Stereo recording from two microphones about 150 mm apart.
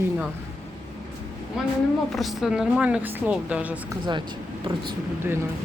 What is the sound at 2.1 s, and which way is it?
A woman's voice, centre (ahead or behind).